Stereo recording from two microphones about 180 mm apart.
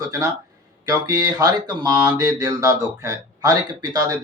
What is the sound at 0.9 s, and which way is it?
Speech, 20° right (ahead or behind).